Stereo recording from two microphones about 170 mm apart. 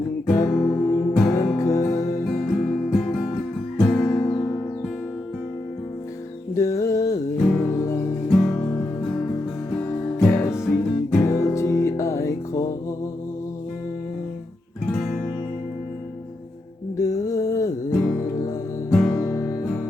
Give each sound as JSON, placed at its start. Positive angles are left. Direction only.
{"t": 0.3, "sound": "music", "side_deg": 15}
{"t": 2.2, "sound": "music", "side_deg": 0}
{"t": 3.8, "sound": "guitar", "side_deg": 5}
{"t": 6.5, "sound": "music", "side_deg": 20}
{"t": 7.3, "sound": "music", "side_deg": 5}
{"t": 7.7, "sound": "music", "side_deg": 15}
{"t": 10.5, "sound": "music", "side_deg": 0}
{"t": 11.2, "sound": "music", "side_deg": 15}
{"t": 17.0, "sound": "music", "side_deg": 20}